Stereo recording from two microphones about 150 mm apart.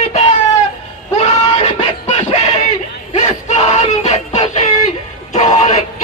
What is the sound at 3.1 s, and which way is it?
Music, 45° left (ahead or behind).